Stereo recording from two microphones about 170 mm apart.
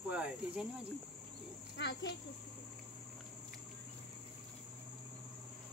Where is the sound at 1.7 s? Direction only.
90° left.